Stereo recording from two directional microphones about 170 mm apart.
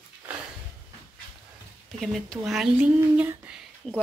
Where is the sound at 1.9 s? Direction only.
Centre (ahead or behind).